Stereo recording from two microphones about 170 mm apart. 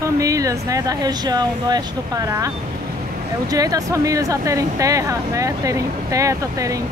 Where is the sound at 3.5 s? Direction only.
20° right (ahead or behind).